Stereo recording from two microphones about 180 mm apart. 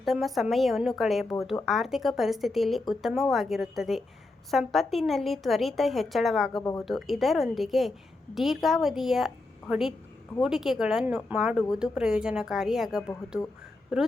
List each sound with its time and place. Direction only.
0.0 s speech: centre (ahead or behind)
6.6 s speech: 20° left (ahead or behind)
6.8 s speech: centre (ahead or behind)